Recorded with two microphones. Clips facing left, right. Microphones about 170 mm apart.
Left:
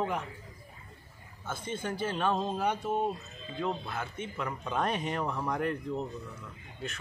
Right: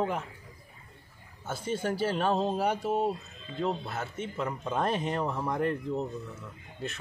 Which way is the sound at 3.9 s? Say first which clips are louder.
Right 2 dB; 30° right (ahead or behind).